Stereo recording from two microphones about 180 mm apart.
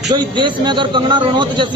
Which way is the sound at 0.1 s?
25° right (ahead or behind).